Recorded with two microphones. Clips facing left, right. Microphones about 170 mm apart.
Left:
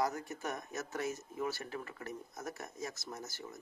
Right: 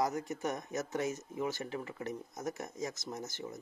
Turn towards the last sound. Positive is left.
turn(degrees=-20)  # may be behind; listen again after turning